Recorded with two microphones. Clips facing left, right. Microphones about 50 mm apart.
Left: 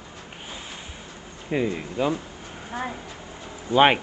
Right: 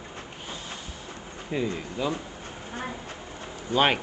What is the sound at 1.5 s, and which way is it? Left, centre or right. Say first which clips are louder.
Speech: left 4 dB; left.